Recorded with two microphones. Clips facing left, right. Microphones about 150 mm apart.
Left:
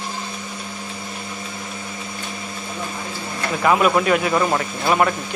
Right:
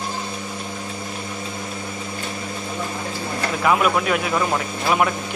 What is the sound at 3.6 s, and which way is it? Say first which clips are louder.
Speech: left 3 dB; centre (ahead or behind).